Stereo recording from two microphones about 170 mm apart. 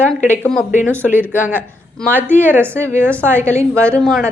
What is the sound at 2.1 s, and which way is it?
Speech, 10° right (ahead or behind).